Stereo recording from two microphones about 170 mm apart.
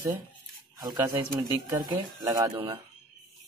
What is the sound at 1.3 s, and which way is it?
Speech, 25° right (ahead or behind).